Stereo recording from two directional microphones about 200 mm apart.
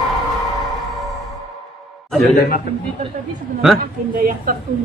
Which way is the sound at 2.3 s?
45° left (ahead or behind).